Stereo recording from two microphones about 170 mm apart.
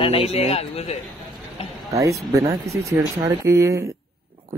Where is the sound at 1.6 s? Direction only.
35° left (ahead or behind).